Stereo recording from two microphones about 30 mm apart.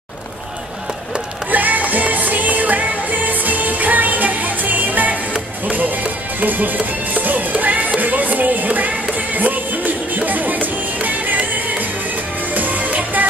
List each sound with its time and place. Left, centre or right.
1.5 s music: right